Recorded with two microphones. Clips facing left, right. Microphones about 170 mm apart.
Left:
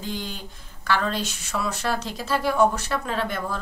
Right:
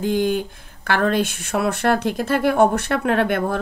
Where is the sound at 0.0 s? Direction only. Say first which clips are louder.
Right 13 dB; 55° right (ahead or behind).